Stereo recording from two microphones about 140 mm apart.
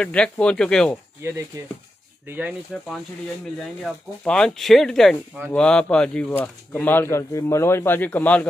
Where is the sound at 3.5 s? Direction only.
5° left (ahead or behind).